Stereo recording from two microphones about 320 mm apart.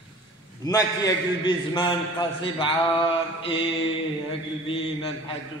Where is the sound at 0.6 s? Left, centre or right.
Centre.